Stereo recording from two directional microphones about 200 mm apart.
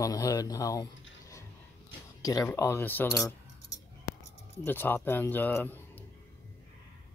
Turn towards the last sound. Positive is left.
turn(degrees=10)  # may be behind; listen again after turning